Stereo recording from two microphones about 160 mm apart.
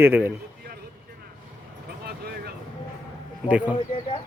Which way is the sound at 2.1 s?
75° right (ahead or behind).